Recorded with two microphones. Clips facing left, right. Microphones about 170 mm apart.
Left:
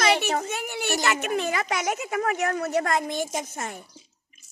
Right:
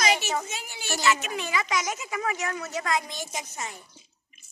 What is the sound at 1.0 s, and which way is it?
Speech, 55° left (ahead or behind).